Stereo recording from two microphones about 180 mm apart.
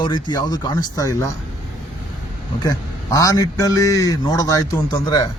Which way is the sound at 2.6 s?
20° left (ahead or behind).